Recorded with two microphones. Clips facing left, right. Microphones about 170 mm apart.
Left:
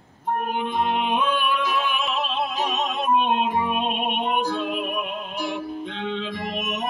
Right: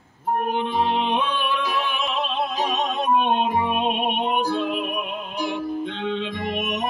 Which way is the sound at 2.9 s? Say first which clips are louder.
Even; 5° left (ahead or behind).